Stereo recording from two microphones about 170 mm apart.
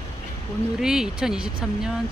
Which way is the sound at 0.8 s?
5° right (ahead or behind).